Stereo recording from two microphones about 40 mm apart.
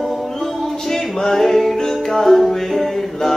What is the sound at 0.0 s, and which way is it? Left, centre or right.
Music, centre.